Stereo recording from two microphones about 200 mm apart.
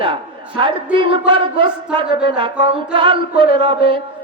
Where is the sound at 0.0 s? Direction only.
25° right (ahead or behind).